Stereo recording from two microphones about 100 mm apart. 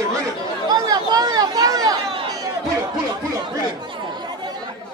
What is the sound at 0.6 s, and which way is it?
Chatter, 45° right (ahead or behind).